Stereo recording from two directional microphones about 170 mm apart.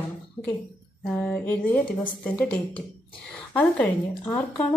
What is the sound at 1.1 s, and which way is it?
A woman's voice, 10° left (ahead or behind).